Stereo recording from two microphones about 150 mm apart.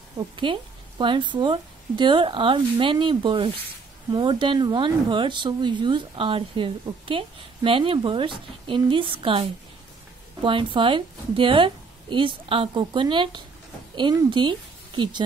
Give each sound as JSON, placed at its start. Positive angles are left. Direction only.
{"t": 0.4, "sound": "speech", "side_deg": -35}